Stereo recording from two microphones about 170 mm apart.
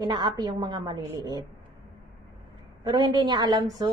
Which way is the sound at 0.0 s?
25° right (ahead or behind).